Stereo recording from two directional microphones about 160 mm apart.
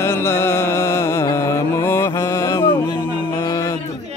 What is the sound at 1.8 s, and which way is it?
Mantra, 15° left (ahead or behind).